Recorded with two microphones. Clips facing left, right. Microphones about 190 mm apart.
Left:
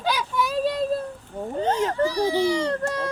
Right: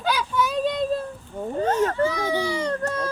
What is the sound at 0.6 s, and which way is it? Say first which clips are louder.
Child singing: left 2 dB; 5° left (ahead or behind).